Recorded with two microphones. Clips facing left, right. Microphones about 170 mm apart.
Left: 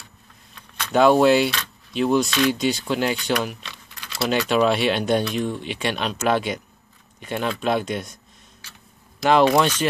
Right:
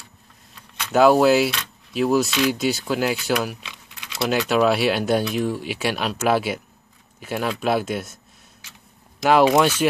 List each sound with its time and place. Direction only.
0.6 s speech: 5° right (ahead or behind)
9.2 s speech: 5° right (ahead or behind)